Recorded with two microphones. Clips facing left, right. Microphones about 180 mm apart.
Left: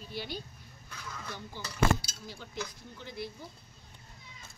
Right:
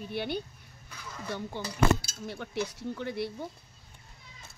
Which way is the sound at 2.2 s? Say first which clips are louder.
Right 7 dB; 65° right (ahead or behind).